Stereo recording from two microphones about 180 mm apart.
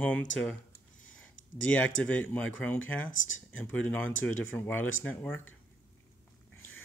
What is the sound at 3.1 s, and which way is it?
Speech, 90° left.